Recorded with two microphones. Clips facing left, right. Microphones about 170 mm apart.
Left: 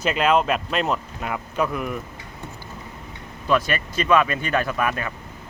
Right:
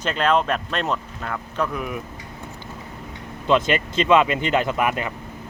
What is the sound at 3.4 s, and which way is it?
Speech, 20° right (ahead or behind).